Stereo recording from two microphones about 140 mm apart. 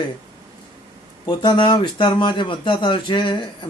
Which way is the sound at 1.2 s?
35° left (ahead or behind).